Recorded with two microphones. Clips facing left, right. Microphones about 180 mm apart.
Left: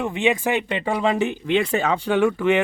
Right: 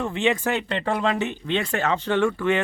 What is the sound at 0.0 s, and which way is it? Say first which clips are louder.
Speech: left 2 dB; 15° left (ahead or behind).